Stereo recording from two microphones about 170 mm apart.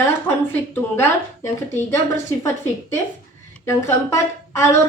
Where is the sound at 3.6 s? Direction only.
15° left (ahead or behind).